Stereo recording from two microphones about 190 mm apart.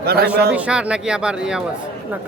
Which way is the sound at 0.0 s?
55° right (ahead or behind).